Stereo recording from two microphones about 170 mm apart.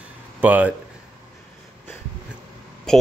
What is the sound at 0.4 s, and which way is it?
Speech, 10° right (ahead or behind).